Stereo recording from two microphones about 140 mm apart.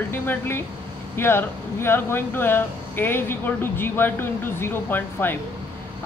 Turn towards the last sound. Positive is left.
turn(degrees=15)  # may be behind; listen again after turning